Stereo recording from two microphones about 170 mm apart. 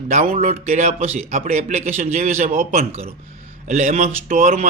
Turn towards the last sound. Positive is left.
turn(degrees=-55)  # may be behind; listen again after turning